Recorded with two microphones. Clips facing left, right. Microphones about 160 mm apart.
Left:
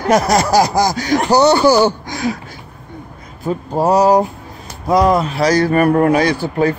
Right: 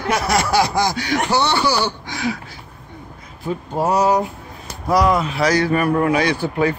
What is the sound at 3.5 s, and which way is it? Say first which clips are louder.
A man's voice: left 5 dB; 40° left (ahead or behind).